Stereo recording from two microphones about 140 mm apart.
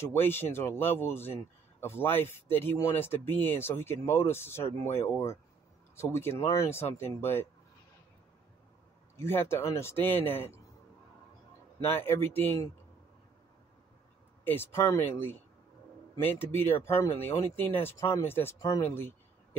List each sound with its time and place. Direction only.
0.0 s speech: 15° left (ahead or behind)
9.1 s speech: 20° left (ahead or behind)
11.8 s speech: 15° left (ahead or behind)
14.4 s speech: 15° left (ahead or behind)